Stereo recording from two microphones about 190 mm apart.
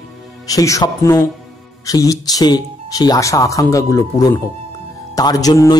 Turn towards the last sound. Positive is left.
turn(degrees=20)  # may be behind; listen again after turning